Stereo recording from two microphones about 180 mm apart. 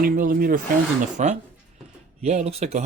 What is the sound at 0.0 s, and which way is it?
Speech, 55° right (ahead or behind).